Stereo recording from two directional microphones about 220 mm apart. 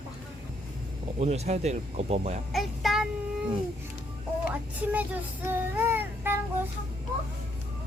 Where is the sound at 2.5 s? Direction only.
Centre (ahead or behind).